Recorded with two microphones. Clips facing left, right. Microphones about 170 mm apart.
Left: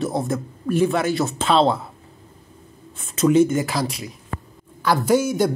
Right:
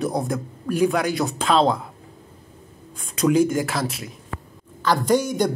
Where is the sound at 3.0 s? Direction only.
5° left (ahead or behind).